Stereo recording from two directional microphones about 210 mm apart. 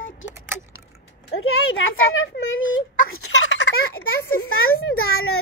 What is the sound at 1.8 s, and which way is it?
A child's voice, 70° left (ahead or behind).